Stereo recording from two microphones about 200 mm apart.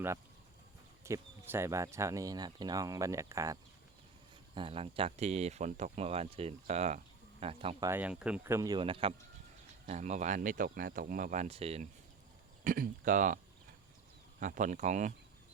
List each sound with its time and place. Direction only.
1.0 s speech: 15° right (ahead or behind)
4.5 s speech: 25° right (ahead or behind)
7.9 s speech: 10° right (ahead or behind); by 11.9 s 30° right (ahead or behind)
12.6 s speech: 45° right (ahead or behind)